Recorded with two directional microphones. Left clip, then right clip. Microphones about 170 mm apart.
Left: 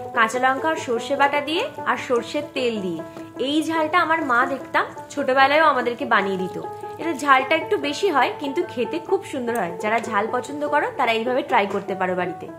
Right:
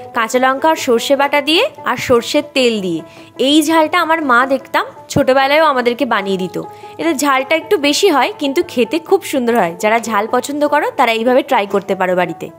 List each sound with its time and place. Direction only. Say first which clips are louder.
0.1 s a woman's voice: right 5 dB; 65° right (ahead or behind)